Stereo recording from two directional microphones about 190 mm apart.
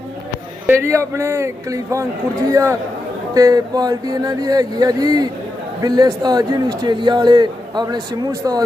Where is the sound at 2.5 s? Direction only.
15° right (ahead or behind).